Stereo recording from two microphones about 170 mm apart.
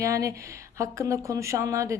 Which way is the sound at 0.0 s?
20° right (ahead or behind).